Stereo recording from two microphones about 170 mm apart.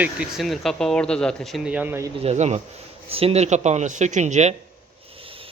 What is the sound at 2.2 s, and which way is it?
A man's voice, 40° right (ahead or behind).